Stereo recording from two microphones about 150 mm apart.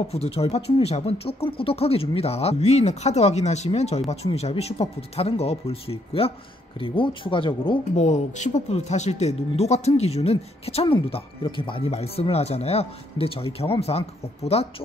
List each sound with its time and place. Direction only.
0.1 s speech: 40° left (ahead or behind)
7.9 s speech: 50° left (ahead or behind)